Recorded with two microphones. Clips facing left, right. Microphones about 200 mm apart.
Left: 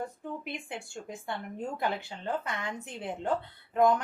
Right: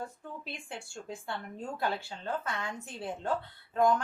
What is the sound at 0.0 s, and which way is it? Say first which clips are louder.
A woman's voice: left 4 dB; 20° left (ahead or behind).